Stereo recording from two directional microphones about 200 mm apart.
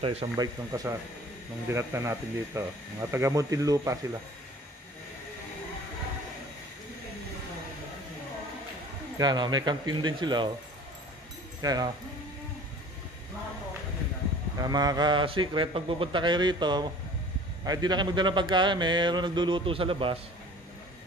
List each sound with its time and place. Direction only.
0.0 s speech: 30° right (ahead or behind)
0.7 s speech: 15° right (ahead or behind)
9.2 s speech: 20° right (ahead or behind)
11.6 s speech: 20° right (ahead or behind)
14.6 s speech: 20° right (ahead or behind)